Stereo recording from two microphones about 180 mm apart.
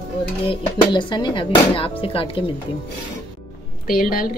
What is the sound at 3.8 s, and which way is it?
Speech, 50° left (ahead or behind).